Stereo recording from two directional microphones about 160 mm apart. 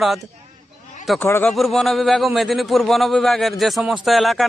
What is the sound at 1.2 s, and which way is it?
Speech, 10° left (ahead or behind).